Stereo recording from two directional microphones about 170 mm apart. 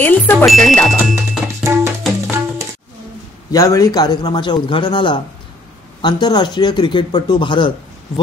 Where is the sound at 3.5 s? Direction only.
20° left (ahead or behind).